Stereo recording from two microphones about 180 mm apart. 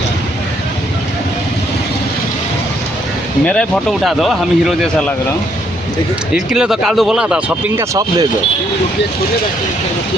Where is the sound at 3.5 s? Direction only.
Centre (ahead or behind).